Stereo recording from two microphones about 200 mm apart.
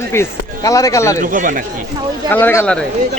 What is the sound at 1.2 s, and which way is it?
Speech, 40° right (ahead or behind).